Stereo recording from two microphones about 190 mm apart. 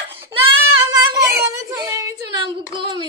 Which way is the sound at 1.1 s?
15° right (ahead or behind).